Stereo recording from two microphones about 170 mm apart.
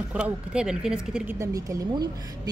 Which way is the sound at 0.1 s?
5° right (ahead or behind).